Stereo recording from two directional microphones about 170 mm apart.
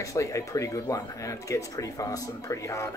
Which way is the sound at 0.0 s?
20° left (ahead or behind).